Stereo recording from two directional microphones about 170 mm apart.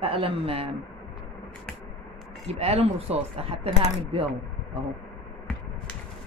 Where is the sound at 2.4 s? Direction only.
35° right (ahead or behind).